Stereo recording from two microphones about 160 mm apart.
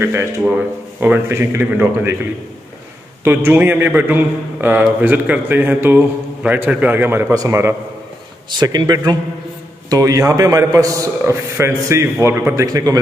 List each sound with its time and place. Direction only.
0.0 s a man's voice: 15° right (ahead or behind)
3.3 s a man's voice: 15° right (ahead or behind)